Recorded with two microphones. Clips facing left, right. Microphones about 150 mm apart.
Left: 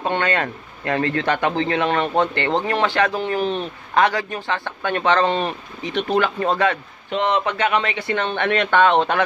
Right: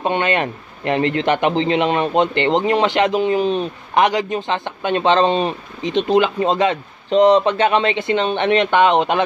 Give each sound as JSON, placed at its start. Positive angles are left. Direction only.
{"t": 0.0, "sound": "a man's voice", "side_deg": -20}
{"t": 7.2, "sound": "a man's voice", "side_deg": -35}